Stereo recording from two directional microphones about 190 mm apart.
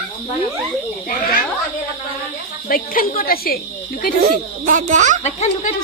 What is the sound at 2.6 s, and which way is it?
Speech, 50° left (ahead or behind).